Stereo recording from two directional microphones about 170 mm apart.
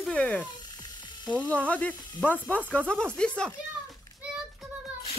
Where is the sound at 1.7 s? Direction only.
10° left (ahead or behind).